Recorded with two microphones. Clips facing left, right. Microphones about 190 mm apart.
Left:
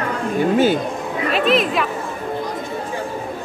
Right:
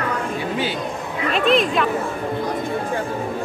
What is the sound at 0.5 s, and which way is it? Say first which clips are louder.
Chatter: left 10 dB; 45° left (ahead or behind).